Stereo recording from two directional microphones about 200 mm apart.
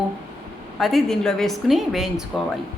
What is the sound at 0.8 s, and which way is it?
A woman's voice, centre (ahead or behind).